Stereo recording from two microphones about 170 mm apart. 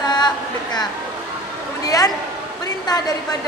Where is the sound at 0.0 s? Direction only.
25° left (ahead or behind).